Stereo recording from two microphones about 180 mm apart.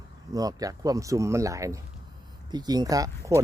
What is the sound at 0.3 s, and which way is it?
Speech, 20° right (ahead or behind).